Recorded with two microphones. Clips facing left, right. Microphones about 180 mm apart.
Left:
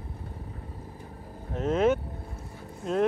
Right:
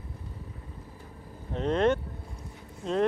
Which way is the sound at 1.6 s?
5° left (ahead or behind).